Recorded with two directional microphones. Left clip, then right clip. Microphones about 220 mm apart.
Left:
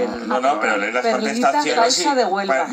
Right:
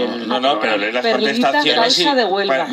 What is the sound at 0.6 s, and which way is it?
A man's voice, 55° right (ahead or behind).